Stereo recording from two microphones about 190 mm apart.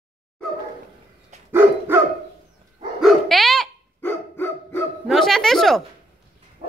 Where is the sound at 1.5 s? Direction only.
10° right (ahead or behind).